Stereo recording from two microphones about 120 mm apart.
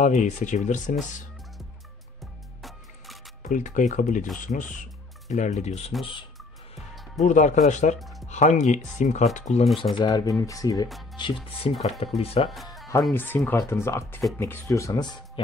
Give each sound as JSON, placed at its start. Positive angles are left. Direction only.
{"t": 0.0, "sound": "speech", "side_deg": 90}
{"t": 3.4, "sound": "speech", "side_deg": 90}
{"t": 6.7, "sound": "speech", "side_deg": 80}
{"t": 8.0, "sound": "music", "side_deg": 0}
{"t": 8.3, "sound": "speech", "side_deg": 80}
{"t": 9.9, "sound": "speech", "side_deg": 35}
{"t": 11.2, "sound": "speech", "side_deg": 40}
{"t": 11.6, "sound": "speech", "side_deg": 50}
{"t": 13.1, "sound": "speech", "side_deg": 15}